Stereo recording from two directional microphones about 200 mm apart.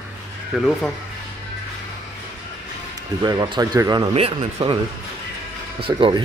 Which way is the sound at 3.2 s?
20° right (ahead or behind).